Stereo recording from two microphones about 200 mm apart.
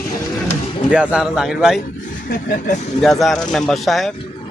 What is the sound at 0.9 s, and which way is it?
Speech, 5° right (ahead or behind).